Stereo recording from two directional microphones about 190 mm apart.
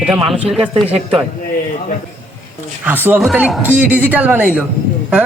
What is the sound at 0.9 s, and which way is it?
Speech, 30° right (ahead or behind).